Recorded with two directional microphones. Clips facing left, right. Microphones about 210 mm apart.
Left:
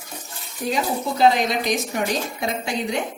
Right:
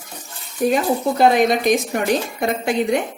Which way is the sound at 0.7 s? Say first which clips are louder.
Right 3 dB; 55° right (ahead or behind).